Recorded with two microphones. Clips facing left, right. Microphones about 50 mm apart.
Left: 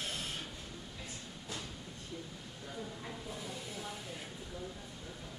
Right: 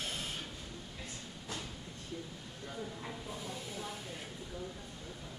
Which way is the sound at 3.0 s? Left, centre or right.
Centre.